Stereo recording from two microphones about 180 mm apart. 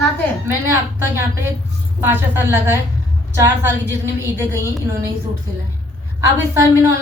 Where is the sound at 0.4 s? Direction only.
15° right (ahead or behind).